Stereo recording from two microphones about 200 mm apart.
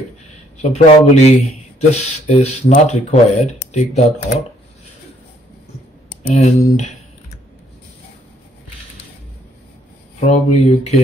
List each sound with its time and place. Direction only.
0.6 s speech: 35° left (ahead or behind)
6.2 s typing: 35° left (ahead or behind)
10.2 s speech: 35° left (ahead or behind)